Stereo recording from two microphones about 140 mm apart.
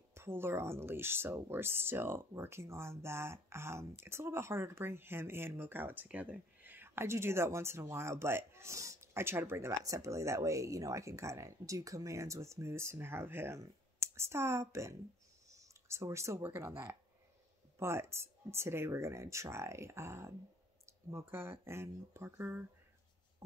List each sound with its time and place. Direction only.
0.1 s speech: 15° right (ahead or behind)